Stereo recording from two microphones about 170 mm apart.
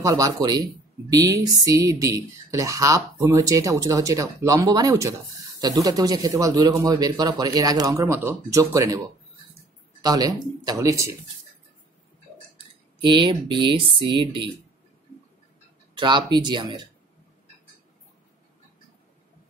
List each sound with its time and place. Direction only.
0.0 s speech: 20° right (ahead or behind)
10.0 s speech: 20° right (ahead or behind)
12.5 s speech: 30° right (ahead or behind)
16.0 s speech: 25° right (ahead or behind)